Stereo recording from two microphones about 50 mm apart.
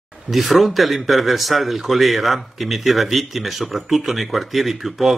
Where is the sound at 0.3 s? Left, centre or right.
Centre.